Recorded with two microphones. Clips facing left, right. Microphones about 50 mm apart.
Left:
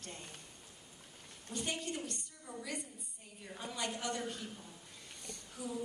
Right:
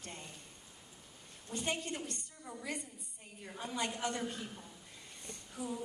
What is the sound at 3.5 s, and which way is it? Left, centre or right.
Speech, right.